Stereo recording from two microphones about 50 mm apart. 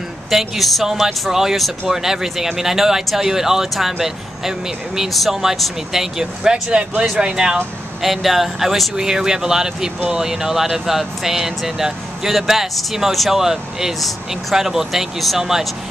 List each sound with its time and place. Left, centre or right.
0.3 s speech: centre
8.0 s speech: centre
8.9 s speech: centre